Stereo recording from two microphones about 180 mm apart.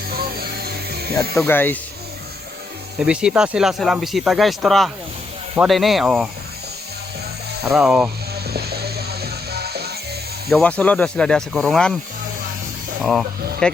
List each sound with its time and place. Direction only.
0.1 s music: 60° right (ahead or behind)
1.4 s speech: 10° left (ahead or behind)
3.0 s speech: 5° right (ahead or behind)
7.6 s speech: centre (ahead or behind)
8.4 s music: 60° right (ahead or behind)
10.5 s speech: 5° left (ahead or behind)
13.0 s speech: centre (ahead or behind)